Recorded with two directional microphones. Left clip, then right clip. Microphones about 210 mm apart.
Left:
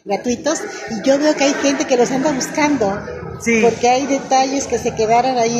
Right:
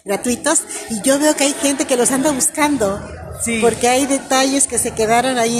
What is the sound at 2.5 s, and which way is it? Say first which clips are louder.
A woman's voice: even; 30° right (ahead or behind).